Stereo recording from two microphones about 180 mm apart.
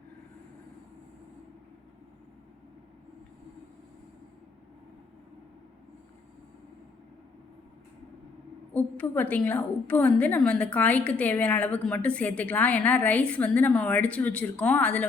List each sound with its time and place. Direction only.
8.7 s a woman's voice: 10° left (ahead or behind)